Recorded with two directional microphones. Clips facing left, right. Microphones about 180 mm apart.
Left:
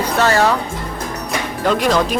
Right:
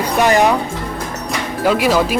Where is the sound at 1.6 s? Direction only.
5° right (ahead or behind).